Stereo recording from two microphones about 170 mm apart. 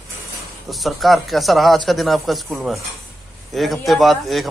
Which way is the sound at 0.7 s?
Centre (ahead or behind).